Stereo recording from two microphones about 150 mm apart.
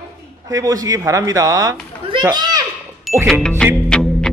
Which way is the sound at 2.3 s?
25° right (ahead or behind).